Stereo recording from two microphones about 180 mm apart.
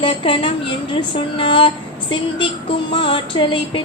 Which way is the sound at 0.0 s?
30° left (ahead or behind).